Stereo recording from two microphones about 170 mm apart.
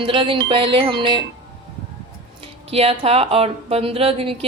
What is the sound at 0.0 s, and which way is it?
Speech, 30° right (ahead or behind).